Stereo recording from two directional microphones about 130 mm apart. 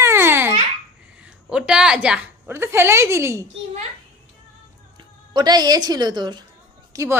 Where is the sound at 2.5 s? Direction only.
20° right (ahead or behind).